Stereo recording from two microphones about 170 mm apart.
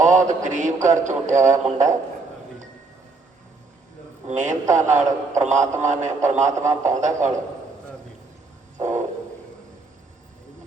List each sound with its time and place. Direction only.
0.0 s speech: 45° right (ahead or behind)
4.3 s speech: 45° right (ahead or behind)
8.8 s a sound: 45° right (ahead or behind)